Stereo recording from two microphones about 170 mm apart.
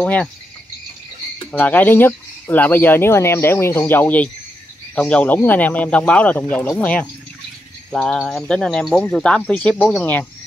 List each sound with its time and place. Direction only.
0.0 s speech: 5° left (ahead or behind)
1.5 s speech: 10° left (ahead or behind)